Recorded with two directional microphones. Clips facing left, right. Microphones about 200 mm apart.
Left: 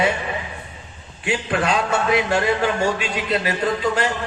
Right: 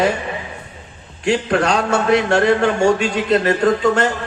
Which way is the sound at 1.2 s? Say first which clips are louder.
Right 5 dB; 5° left (ahead or behind).